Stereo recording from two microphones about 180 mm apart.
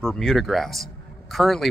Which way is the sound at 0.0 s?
Centre (ahead or behind).